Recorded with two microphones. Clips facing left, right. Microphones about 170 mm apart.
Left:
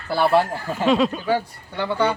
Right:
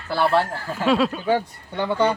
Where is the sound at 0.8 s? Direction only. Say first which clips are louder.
Left 1 dB; centre (ahead or behind).